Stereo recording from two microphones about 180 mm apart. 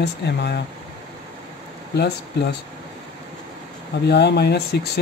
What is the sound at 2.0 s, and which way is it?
Speech, 65° left (ahead or behind).